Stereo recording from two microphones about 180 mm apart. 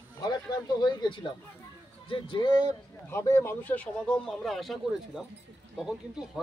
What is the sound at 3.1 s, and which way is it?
Speech, 15° left (ahead or behind).